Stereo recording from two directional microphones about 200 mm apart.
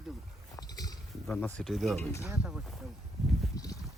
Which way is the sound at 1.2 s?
5° left (ahead or behind).